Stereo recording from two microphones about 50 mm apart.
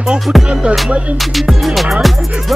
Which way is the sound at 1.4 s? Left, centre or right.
Centre.